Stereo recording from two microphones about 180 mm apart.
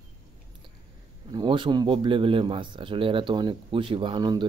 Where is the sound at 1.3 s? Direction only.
25° right (ahead or behind).